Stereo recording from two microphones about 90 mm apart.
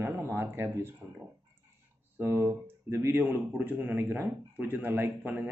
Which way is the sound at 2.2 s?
30° right (ahead or behind).